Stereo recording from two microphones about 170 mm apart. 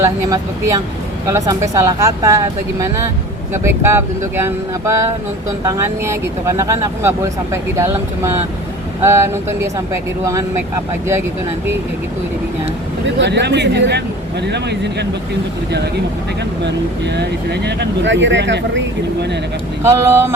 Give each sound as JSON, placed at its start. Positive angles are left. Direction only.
{"t": 0.0, "sound": "speech", "side_deg": -15}
{"t": 13.1, "sound": "speech", "side_deg": -90}
{"t": 17.2, "sound": "speech", "side_deg": -80}
{"t": 19.8, "sound": "speech", "side_deg": -15}